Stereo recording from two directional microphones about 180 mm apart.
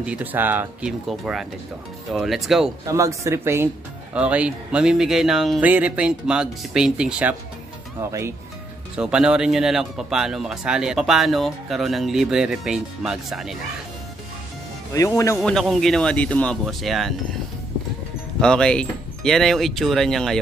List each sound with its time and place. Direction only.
0.0 s speech: 10° right (ahead or behind)
2.8 s speech: 15° right (ahead or behind)
8.9 s speech: 5° right (ahead or behind)
15.0 s speech: 15° left (ahead or behind)
15.4 s speech: centre (ahead or behind)
18.4 s speech: 5° left (ahead or behind)